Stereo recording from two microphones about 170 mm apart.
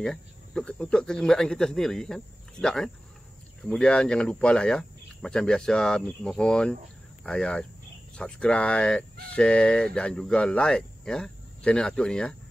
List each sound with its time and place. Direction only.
0.0 s speech: 5° left (ahead or behind)